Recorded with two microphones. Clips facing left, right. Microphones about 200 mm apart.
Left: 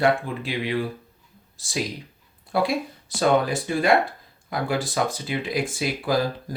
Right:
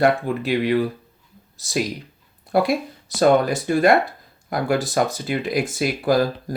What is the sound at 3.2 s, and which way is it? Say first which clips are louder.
Speech: right 4 dB; 45° right (ahead or behind).